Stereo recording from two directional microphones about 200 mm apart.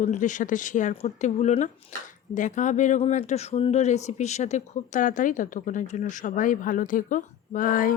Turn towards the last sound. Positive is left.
turn(degrees=45)  # may be behind; listen again after turning